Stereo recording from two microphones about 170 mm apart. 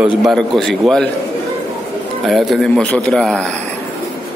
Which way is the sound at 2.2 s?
Centre (ahead or behind).